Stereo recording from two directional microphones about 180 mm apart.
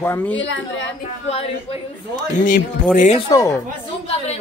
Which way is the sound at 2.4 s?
50° left (ahead or behind).